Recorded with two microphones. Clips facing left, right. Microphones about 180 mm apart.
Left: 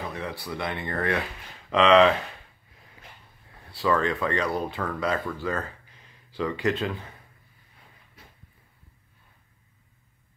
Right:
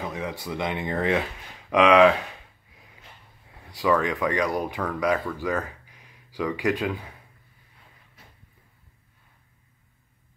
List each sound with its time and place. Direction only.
0.1 s speech: 15° right (ahead or behind)
3.7 s speech: 15° right (ahead or behind)